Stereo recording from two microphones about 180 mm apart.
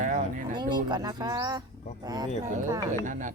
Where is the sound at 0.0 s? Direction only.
45° right (ahead or behind).